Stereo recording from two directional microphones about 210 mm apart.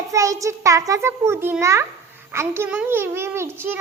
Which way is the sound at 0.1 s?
15° right (ahead or behind).